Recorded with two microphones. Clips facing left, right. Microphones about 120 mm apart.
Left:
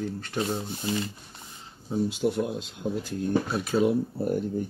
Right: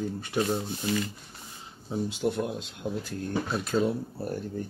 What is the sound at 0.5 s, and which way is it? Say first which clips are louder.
Speech: right 1 dB; 30° left (ahead or behind).